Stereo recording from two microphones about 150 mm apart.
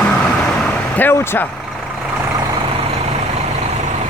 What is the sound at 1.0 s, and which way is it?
Speech, 15° left (ahead or behind).